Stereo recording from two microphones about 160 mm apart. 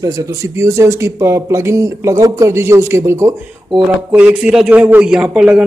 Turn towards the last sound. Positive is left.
turn(degrees=-5)  # may be behind; listen again after turning